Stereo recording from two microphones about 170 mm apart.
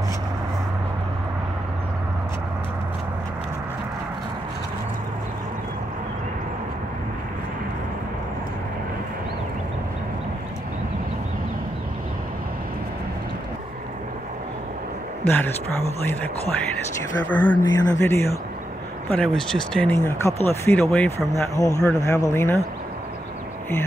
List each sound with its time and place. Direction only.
17.3 s speech: 15° left (ahead or behind)
19.0 s speech: 5° left (ahead or behind)
20.9 s speech: 5° left (ahead or behind)
21.3 s speech: 20° left (ahead or behind)